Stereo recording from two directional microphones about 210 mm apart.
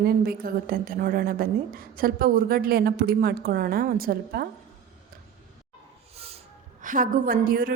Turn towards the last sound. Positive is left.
turn(degrees=-45)  # may be behind; listen again after turning